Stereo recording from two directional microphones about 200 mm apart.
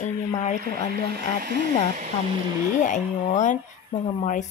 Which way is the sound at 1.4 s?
40° right (ahead or behind).